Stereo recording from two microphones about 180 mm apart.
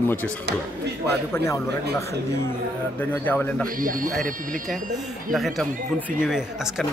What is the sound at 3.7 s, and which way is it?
Speech, 50° right (ahead or behind).